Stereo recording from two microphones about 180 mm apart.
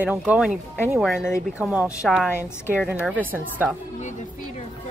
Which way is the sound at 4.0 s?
40° left (ahead or behind).